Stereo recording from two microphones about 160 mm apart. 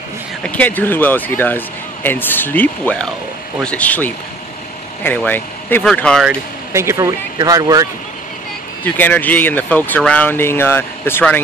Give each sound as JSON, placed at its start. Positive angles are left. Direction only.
{"t": 0.5, "sound": "speech", "side_deg": 10}
{"t": 6.7, "sound": "speech", "side_deg": -15}
{"t": 8.8, "sound": "speech", "side_deg": 10}